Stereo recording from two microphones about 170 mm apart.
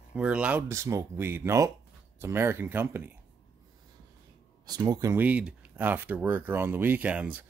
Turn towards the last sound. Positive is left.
turn(degrees=-10)  # may be behind; listen again after turning